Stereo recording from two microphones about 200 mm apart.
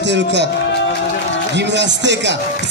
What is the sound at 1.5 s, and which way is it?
Speech, 60° right (ahead or behind).